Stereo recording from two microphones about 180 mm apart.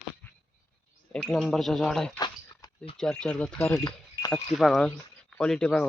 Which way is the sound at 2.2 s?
25° left (ahead or behind).